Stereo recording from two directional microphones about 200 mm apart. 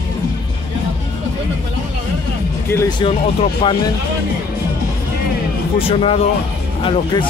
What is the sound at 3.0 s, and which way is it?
Speech, 25° left (ahead or behind).